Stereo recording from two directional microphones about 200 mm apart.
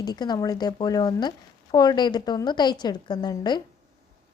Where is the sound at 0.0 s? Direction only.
20° left (ahead or behind).